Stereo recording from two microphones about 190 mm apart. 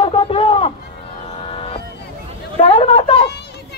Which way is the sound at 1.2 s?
30° left (ahead or behind).